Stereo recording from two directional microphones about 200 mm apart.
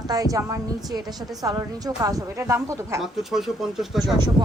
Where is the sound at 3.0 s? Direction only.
Centre (ahead or behind).